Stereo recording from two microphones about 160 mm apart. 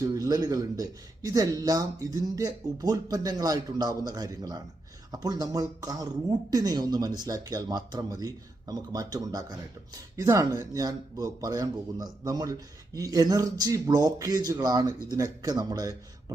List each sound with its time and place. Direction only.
0.0 s speech: 20° right (ahead or behind)